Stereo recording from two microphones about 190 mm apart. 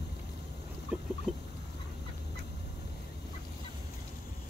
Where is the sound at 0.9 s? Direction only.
5° right (ahead or behind).